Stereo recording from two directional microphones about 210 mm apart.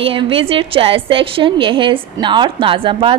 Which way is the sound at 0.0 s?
25° right (ahead or behind).